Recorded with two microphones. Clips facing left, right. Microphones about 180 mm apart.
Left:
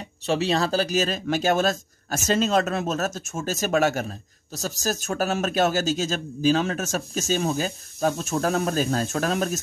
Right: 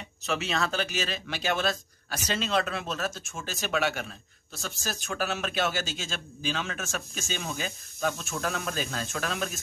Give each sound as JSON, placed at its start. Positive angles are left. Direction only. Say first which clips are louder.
{"t": 0.3, "sound": "speech", "louder": "left 7 dB", "side_deg": 35}